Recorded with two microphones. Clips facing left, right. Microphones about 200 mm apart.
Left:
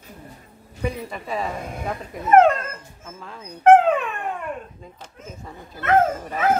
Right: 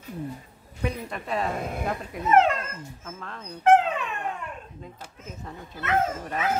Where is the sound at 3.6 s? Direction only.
55° left (ahead or behind).